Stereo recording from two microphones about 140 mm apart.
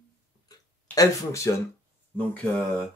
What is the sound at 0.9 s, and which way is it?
Speech, 25° left (ahead or behind).